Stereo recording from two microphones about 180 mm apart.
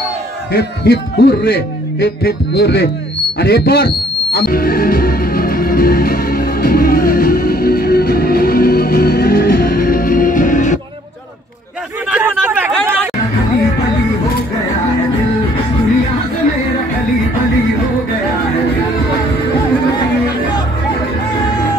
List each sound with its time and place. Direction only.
0.5 s a man's voice: 60° left (ahead or behind)
3.3 s music: 60° left (ahead or behind)
12.1 s chatter: 5° right (ahead or behind)